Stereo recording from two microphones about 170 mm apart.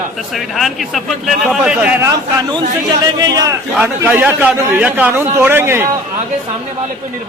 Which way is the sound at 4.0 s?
10° right (ahead or behind).